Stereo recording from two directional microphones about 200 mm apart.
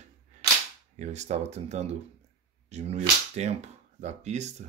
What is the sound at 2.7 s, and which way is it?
Cap gun, 35° right (ahead or behind).